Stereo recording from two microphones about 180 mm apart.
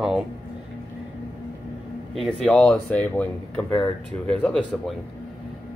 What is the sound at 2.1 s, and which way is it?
Speech, centre (ahead or behind).